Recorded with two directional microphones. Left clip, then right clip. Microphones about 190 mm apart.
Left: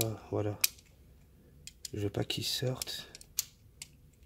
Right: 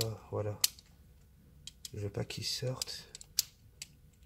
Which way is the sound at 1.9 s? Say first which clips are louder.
Left 6 dB; 45° left (ahead or behind).